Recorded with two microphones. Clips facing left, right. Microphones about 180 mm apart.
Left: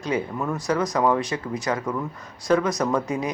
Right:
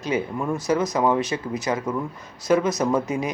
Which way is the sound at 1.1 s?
20° right (ahead or behind).